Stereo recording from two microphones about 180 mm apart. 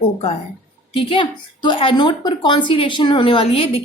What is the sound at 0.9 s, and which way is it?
A woman's voice, 30° left (ahead or behind).